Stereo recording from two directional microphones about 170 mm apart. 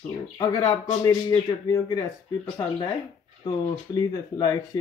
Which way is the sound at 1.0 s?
20° left (ahead or behind).